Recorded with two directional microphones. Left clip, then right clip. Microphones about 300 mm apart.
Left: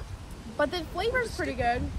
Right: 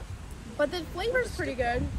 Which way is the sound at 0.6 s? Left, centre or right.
Centre.